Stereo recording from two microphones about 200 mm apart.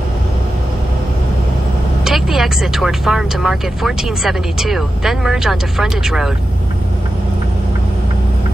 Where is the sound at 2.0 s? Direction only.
Centre (ahead or behind).